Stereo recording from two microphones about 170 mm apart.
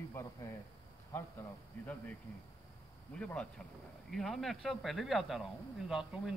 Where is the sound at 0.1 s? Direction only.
15° left (ahead or behind).